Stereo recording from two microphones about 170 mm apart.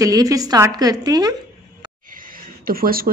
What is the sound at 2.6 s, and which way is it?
Speech, 60° right (ahead or behind).